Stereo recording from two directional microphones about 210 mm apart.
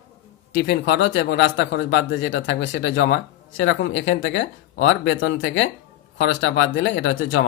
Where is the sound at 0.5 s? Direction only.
50° left (ahead or behind).